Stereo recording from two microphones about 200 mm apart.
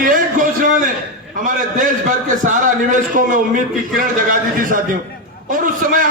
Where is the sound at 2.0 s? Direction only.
40° right (ahead or behind).